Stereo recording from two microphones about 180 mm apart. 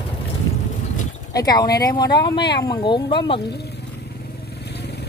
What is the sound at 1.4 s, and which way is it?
Speech, 20° left (ahead or behind).